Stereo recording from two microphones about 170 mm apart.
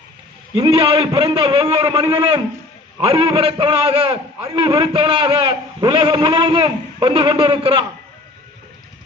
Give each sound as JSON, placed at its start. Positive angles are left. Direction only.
{"t": 0.5, "sound": "a man's voice", "side_deg": -30}